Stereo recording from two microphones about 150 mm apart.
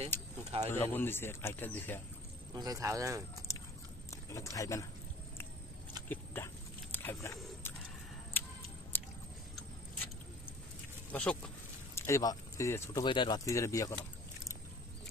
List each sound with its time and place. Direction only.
0.7 s speech: 15° left (ahead or behind)
2.5 s speech: 25° right (ahead or behind)
3.5 s biting: 20° left (ahead or behind)
4.1 s speech: 20° left (ahead or behind)
6.0 s a sound: 15° left (ahead or behind)
8.9 s chewing: 15° left (ahead or behind)
11.1 s a sound: 10° left (ahead or behind)
12.1 s speech: 20° left (ahead or behind)
13.0 s speech: 30° left (ahead or behind)
13.4 s speech: 20° left (ahead or behind)